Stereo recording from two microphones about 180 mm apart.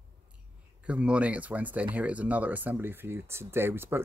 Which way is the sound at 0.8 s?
5° right (ahead or behind).